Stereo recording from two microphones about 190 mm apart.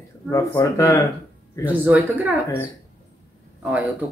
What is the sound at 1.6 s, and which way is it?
Speech, 10° right (ahead or behind).